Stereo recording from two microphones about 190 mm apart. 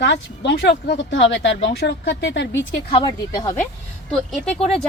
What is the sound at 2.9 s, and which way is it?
Speech, 20° left (ahead or behind).